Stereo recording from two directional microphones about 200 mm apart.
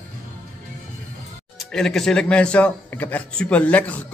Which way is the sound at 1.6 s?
Centre (ahead or behind).